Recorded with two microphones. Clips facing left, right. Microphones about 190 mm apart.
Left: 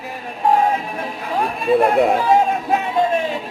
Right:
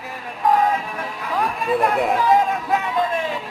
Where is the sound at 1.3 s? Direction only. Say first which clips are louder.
Left 4 dB; 30° left (ahead or behind).